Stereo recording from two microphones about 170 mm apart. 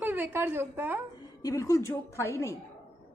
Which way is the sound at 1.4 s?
20° left (ahead or behind).